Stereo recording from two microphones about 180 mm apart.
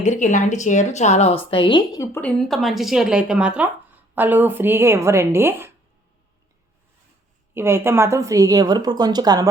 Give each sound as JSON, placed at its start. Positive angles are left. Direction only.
{"t": 0.0, "sound": "a woman's voice", "side_deg": 40}
{"t": 2.2, "sound": "a woman's voice", "side_deg": 0}
{"t": 7.5, "sound": "a woman's voice", "side_deg": -15}